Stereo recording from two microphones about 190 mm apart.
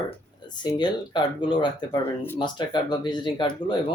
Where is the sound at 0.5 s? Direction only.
20° left (ahead or behind).